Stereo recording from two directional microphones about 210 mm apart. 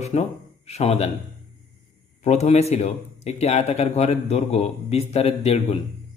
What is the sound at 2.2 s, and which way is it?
Speech, 30° left (ahead or behind).